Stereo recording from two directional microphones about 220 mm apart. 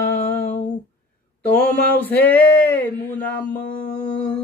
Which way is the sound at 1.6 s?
5° left (ahead or behind).